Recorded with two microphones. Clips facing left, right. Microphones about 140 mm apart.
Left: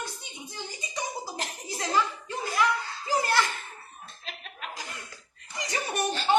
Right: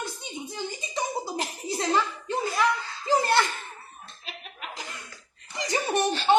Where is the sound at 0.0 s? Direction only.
25° right (ahead or behind).